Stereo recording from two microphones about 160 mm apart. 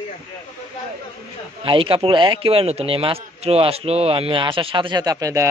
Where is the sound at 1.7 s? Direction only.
35° right (ahead or behind).